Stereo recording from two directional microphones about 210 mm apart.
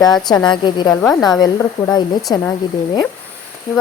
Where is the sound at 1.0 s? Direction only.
Centre (ahead or behind).